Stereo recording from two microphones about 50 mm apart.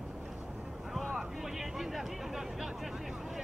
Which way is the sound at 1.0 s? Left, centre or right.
Centre.